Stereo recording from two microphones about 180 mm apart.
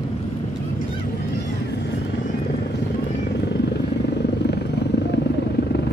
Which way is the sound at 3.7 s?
70° left (ahead or behind).